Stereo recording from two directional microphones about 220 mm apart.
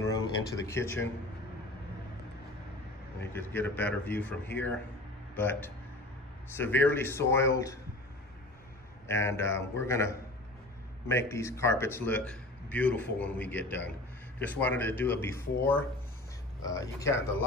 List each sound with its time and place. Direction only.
0.0 s a sound: 15° left (ahead or behind)
0.7 s a man's voice: 10° left (ahead or behind)
3.2 s a man's voice: 10° left (ahead or behind)
9.0 s a man's voice: 10° left (ahead or behind)